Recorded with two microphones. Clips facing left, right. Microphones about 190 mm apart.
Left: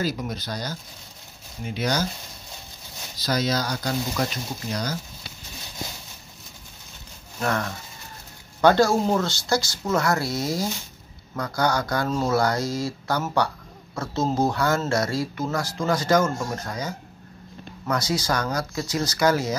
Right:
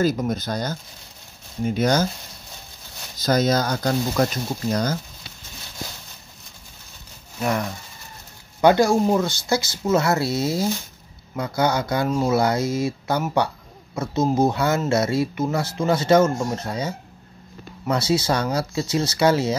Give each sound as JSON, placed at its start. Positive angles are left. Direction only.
{"t": 0.0, "sound": "speech", "side_deg": -50}
{"t": 3.2, "sound": "speech", "side_deg": -50}
{"t": 7.3, "sound": "speech", "side_deg": -15}